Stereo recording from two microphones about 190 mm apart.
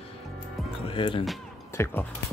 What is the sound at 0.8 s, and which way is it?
Speech, 25° left (ahead or behind).